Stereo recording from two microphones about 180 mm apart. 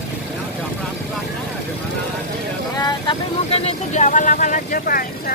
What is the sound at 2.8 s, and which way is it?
Vehicle, 30° left (ahead or behind).